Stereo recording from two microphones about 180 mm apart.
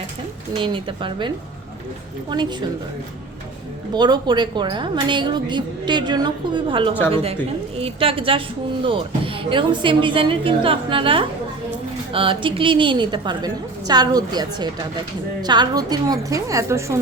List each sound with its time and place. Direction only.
0.5 s a woman's voice: 25° right (ahead or behind)
2.3 s a woman's voice: 25° right (ahead or behind)
3.9 s a woman's voice: 25° right (ahead or behind)